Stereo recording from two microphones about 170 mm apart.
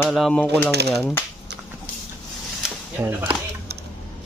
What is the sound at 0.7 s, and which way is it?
Speech, 75° right (ahead or behind).